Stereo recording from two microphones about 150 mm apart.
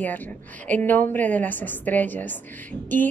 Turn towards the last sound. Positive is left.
turn(degrees=10)  # may be behind; listen again after turning